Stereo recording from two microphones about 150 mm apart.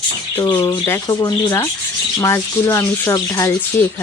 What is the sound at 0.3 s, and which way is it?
Speech, 20° left (ahead or behind).